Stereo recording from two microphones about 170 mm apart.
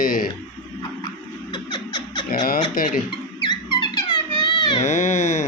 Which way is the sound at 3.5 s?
25° left (ahead or behind).